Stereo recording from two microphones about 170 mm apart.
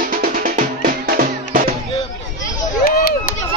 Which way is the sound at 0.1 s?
55° right (ahead or behind).